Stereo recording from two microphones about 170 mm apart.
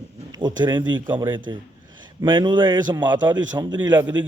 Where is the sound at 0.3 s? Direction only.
25° right (ahead or behind).